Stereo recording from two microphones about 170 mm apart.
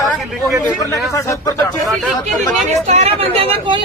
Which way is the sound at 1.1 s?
20° left (ahead or behind).